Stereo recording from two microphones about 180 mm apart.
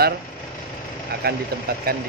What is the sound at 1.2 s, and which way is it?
Speech, 60° right (ahead or behind).